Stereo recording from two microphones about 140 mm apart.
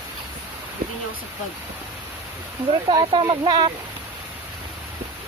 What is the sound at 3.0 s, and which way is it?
Speech, 40° right (ahead or behind).